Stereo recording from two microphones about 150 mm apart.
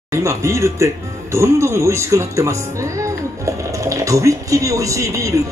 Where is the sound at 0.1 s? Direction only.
20° right (ahead or behind).